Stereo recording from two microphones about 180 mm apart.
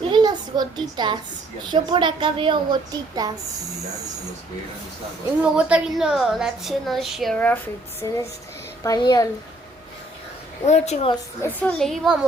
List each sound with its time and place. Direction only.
0.1 s a sound: 25° right (ahead or behind)
1.7 s a woman's voice: 25° right (ahead or behind)
5.4 s a woman's voice: 5° right (ahead or behind)
8.0 s a sound: 15° left (ahead or behind)
8.8 s a woman's voice: 20° left (ahead or behind)
10.7 s a woman's voice: 35° left (ahead or behind)
11.4 s a woman's voice: 5° left (ahead or behind)